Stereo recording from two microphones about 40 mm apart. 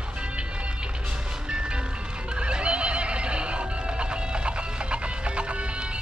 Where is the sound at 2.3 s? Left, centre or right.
Right.